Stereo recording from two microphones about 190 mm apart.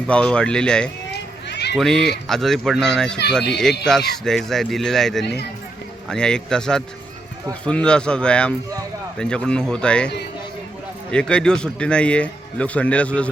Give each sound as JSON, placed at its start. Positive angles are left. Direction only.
{"t": 0.1, "sound": "a man's voice", "side_deg": 5}
{"t": 1.1, "sound": "run", "side_deg": 60}
{"t": 1.7, "sound": "a man's voice", "side_deg": 0}
{"t": 11.1, "sound": "a man's voice", "side_deg": 5}